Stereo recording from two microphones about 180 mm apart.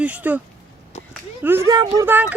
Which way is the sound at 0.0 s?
10° right (ahead or behind).